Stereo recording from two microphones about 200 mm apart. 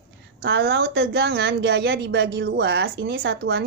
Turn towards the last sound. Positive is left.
turn(degrees=-60)  # may be behind; listen again after turning